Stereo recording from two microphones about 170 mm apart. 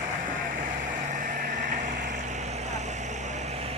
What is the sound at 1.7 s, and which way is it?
Vehicle, 45° right (ahead or behind).